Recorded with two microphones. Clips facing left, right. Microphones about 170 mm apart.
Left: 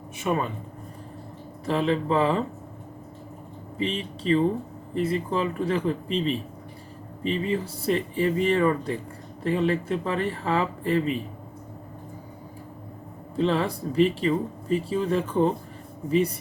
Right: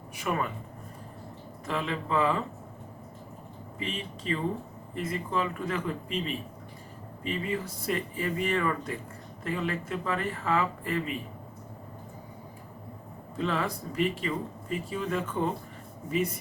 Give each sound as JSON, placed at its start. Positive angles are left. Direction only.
{"t": 0.2, "sound": "speech", "side_deg": 25}
{"t": 1.6, "sound": "speech", "side_deg": 30}
{"t": 3.8, "sound": "speech", "side_deg": 30}
{"t": 13.3, "sound": "speech", "side_deg": 30}